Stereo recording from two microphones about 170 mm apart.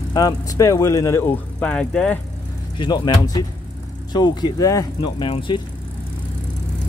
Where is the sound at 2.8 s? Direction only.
25° left (ahead or behind).